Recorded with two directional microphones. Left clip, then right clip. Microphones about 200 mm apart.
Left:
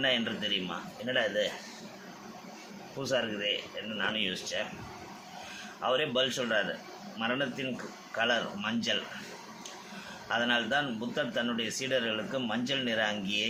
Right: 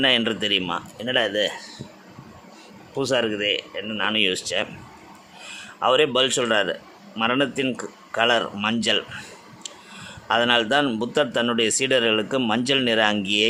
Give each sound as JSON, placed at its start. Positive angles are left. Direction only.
{"t": 0.0, "sound": "speech", "side_deg": -55}
{"t": 3.0, "sound": "speech", "side_deg": -55}
{"t": 5.8, "sound": "speech", "side_deg": -55}
{"t": 10.2, "sound": "speech", "side_deg": -55}